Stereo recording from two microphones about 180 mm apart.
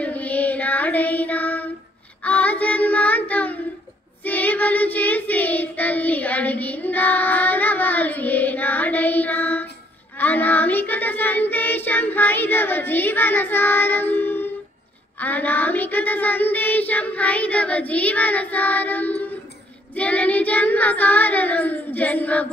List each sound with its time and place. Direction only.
0.0 s child singing: 10° left (ahead or behind)